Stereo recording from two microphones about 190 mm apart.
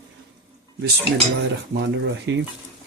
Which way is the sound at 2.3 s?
65° right (ahead or behind).